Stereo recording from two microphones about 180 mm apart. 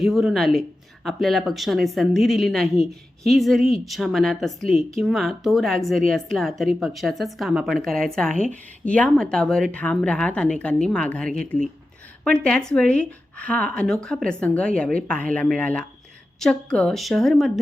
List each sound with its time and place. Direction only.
0.0 s speech: centre (ahead or behind)